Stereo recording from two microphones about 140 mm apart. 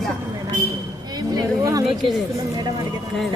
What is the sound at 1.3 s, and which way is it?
Speech, 25° right (ahead or behind).